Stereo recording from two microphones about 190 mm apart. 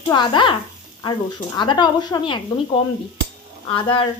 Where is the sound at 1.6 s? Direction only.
25° left (ahead or behind).